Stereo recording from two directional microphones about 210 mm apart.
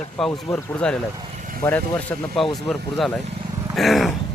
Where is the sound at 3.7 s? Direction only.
Centre (ahead or behind).